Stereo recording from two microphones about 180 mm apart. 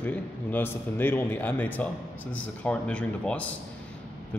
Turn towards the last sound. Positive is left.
turn(degrees=5)  # may be behind; listen again after turning